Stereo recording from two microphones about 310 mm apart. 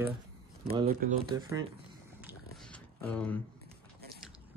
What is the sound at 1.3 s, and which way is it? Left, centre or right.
Speech, centre.